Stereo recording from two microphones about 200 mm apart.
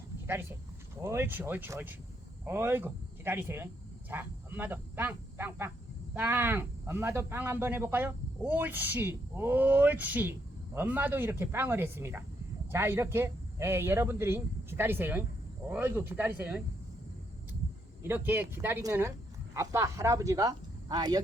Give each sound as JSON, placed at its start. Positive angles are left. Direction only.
{"t": 1.0, "sound": "speech", "side_deg": -10}
{"t": 18.1, "sound": "speech", "side_deg": -10}